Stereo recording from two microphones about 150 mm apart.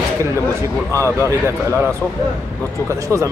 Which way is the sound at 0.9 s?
20° right (ahead or behind).